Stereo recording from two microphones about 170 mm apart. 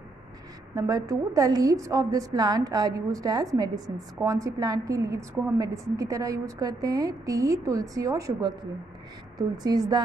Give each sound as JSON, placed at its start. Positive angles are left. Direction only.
{"t": 0.7, "sound": "a woman's voice", "side_deg": -20}